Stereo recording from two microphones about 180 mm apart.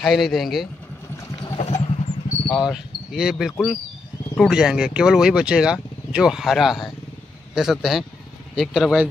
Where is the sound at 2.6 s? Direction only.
5° right (ahead or behind).